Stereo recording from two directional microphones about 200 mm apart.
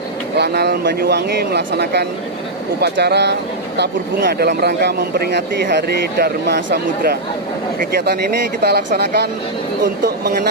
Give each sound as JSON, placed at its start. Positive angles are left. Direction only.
{"t": 0.3, "sound": "speech", "side_deg": -55}